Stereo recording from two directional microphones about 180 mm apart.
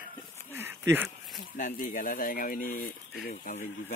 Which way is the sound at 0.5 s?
10° right (ahead or behind).